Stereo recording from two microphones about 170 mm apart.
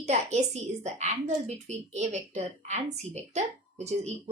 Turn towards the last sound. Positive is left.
turn(degrees=-40)  # may be behind; listen again after turning